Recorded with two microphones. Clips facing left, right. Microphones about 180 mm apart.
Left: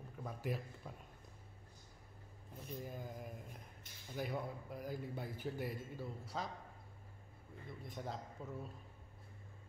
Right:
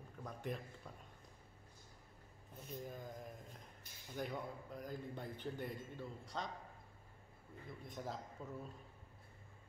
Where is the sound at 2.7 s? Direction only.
5° left (ahead or behind).